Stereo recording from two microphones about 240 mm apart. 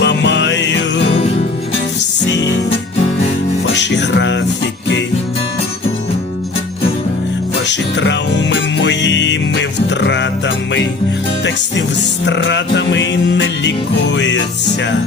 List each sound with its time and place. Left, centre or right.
0.0 s music: left
3.8 s music: left
7.7 s music: left
12.2 s music: left